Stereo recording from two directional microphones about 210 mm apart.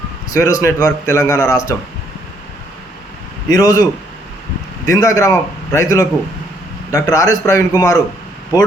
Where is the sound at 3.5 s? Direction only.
15° left (ahead or behind).